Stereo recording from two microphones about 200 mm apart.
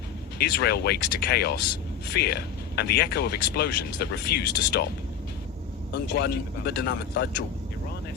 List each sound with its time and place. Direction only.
0.3 s speech: 55° left (ahead or behind)
5.9 s speech: 55° left (ahead or behind)